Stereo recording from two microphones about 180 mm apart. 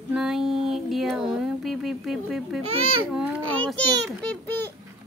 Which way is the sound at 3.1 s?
5° right (ahead or behind).